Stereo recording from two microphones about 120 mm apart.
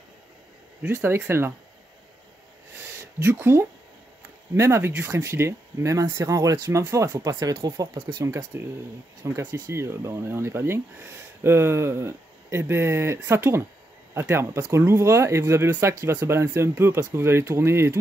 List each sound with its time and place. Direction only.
0.8 s speech: 20° right (ahead or behind)
3.0 s speech: 20° right (ahead or behind)